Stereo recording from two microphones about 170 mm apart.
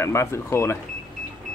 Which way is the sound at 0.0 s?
15° left (ahead or behind).